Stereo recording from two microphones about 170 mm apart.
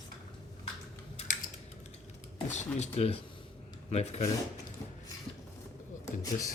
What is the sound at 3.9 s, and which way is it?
Speech, 40° left (ahead or behind).